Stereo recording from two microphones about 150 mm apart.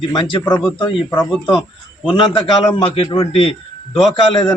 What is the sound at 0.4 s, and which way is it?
Speech, 15° left (ahead or behind).